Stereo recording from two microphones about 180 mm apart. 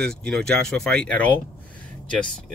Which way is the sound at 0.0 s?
5° left (ahead or behind).